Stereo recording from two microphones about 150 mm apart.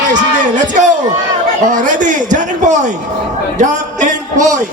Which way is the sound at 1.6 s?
60° right (ahead or behind).